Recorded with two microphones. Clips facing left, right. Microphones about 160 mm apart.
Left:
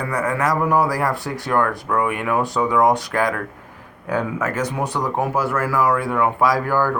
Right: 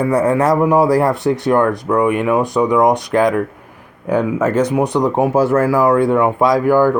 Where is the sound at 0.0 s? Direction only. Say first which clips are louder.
Right 8 dB; 25° right (ahead or behind).